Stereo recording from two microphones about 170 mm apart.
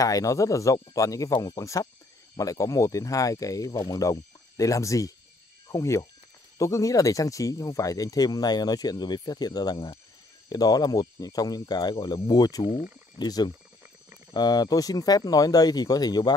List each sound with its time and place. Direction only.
0.0 s speech: 20° left (ahead or behind)